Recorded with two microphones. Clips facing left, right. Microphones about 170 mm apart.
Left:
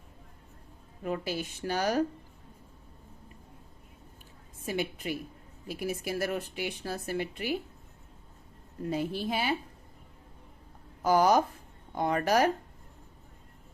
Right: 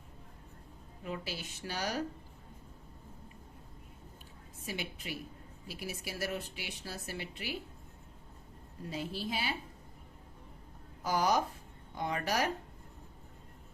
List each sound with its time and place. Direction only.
1.0 s a woman's voice: 50° left (ahead or behind)
4.6 s a woman's voice: 50° left (ahead or behind)
8.9 s a woman's voice: 55° left (ahead or behind)
11.0 s a woman's voice: 50° left (ahead or behind)